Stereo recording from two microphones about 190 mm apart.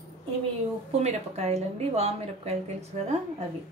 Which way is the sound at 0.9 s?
35° right (ahead or behind).